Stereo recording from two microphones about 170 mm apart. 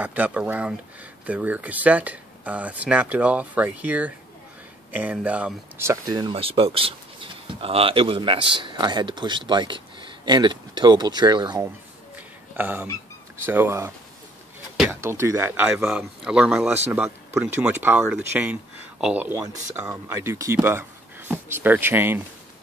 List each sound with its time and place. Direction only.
0.0 s speech: 10° right (ahead or behind); by 11.6 s 25° right (ahead or behind)
12.5 s speech: 10° right (ahead or behind)